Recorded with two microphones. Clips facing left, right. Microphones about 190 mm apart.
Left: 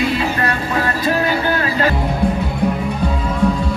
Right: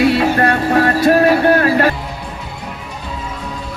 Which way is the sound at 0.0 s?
70° right (ahead or behind).